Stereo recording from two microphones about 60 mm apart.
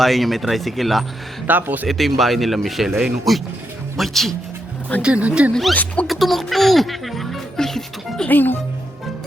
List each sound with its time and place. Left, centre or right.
0.0 s speech: centre
1.5 s speech: right
1.9 s speech: centre
5.0 s speech: centre
5.7 s a sound: left
6.1 s speech: centre
8.3 s speech: left